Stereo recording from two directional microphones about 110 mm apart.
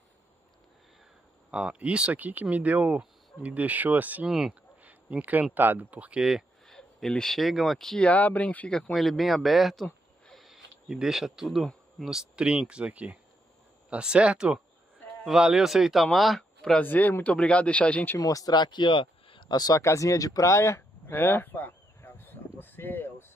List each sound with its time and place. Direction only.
1.5 s speech: 10° right (ahead or behind)
4.3 s speech: 5° right (ahead or behind)
4.8 s speech: 15° right (ahead or behind); by 16.8 s 5° left (ahead or behind)
16.8 s speech: 15° left (ahead or behind)
18.2 s speech: 35° left (ahead or behind)